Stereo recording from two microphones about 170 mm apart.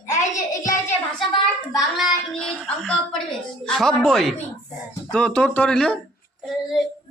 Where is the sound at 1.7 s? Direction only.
Centre (ahead or behind).